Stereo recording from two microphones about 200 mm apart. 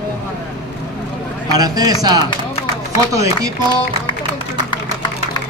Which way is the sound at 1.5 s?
20° right (ahead or behind).